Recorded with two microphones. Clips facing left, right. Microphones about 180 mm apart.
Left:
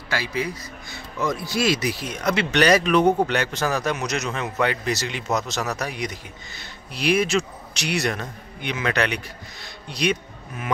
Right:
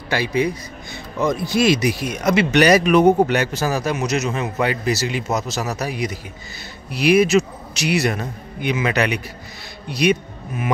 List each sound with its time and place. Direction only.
0.1 s a man's voice: 20° right (ahead or behind)